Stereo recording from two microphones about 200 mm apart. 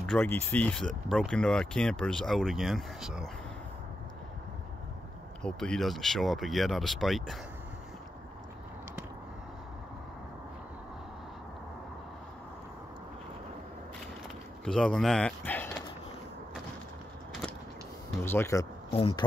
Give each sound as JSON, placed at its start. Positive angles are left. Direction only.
{"t": 0.0, "sound": "speech", "side_deg": 10}
{"t": 5.4, "sound": "speech", "side_deg": 5}
{"t": 14.6, "sound": "speech", "side_deg": 5}
{"t": 18.2, "sound": "speech", "side_deg": 10}
{"t": 18.9, "sound": "speech", "side_deg": 30}